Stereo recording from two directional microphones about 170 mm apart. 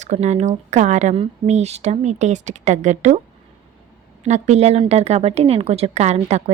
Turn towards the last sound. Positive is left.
turn(degrees=-40)  # may be behind; listen again after turning